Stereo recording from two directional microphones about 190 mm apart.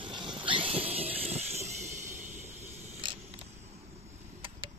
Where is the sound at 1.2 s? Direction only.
35° right (ahead or behind).